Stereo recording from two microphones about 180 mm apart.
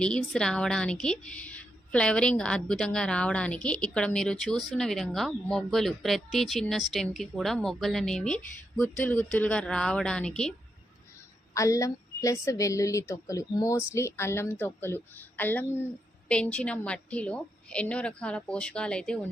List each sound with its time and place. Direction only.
0.0 s a woman's voice: 5° left (ahead or behind)
11.5 s a woman's voice: 15° left (ahead or behind)